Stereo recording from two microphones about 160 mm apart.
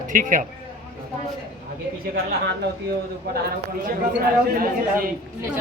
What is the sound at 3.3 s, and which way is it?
Speech, 80° right.